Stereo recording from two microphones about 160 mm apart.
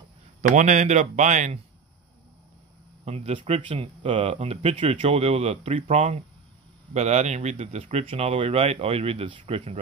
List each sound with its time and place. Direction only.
0.4 s speech: 50° right (ahead or behind)
3.1 s speech: 40° right (ahead or behind)